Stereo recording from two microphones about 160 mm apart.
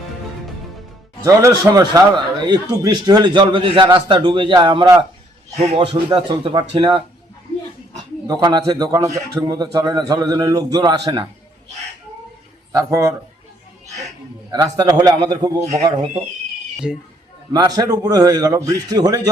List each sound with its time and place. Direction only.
1.2 s a man's voice: 20° right (ahead or behind)
8.3 s speech: 25° right (ahead or behind)
12.7 s speech: 20° right (ahead or behind)
14.5 s speech: 25° right (ahead or behind)
16.8 s speech: 5° right (ahead or behind)
17.5 s speech: 25° right (ahead or behind)